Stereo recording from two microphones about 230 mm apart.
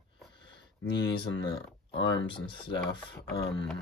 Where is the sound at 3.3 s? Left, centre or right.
Left.